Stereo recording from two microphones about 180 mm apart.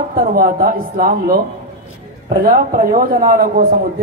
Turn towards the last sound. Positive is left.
turn(degrees=-55)  # may be behind; listen again after turning